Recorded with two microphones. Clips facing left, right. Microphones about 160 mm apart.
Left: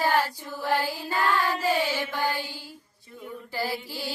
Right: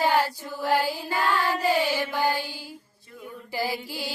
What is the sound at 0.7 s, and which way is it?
Mantra, 15° right (ahead or behind).